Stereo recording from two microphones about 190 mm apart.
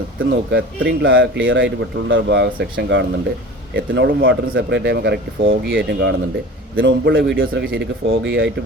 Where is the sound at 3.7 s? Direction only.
55° right (ahead or behind).